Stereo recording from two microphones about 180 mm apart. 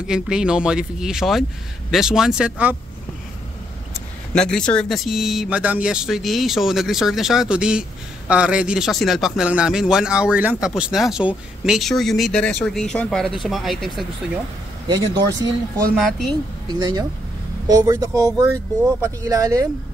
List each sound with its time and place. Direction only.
0.0 s a man's voice: 5° right (ahead or behind)
4.3 s a man's voice: 5° left (ahead or behind)
14.9 s speech: 20° right (ahead or behind)
16.0 s a man's voice: centre (ahead or behind)
16.6 s speech: 20° right (ahead or behind)